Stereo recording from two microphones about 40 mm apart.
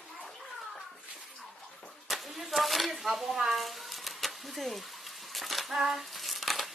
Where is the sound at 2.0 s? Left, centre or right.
Centre.